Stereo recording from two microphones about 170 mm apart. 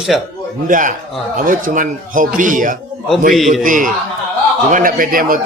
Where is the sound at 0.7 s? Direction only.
50° right (ahead or behind).